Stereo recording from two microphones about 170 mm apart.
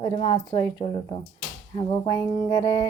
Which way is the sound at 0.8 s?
25° left (ahead or behind).